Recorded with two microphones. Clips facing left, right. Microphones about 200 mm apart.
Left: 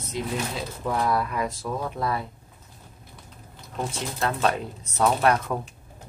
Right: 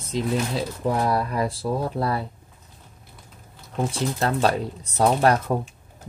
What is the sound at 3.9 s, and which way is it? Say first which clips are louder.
Speech: right 4 dB; 35° right (ahead or behind).